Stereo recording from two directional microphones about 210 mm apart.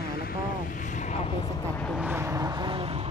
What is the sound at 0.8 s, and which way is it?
Speech, 35° left (ahead or behind).